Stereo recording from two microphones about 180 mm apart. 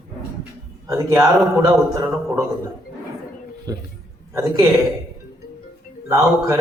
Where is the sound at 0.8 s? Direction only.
15° right (ahead or behind).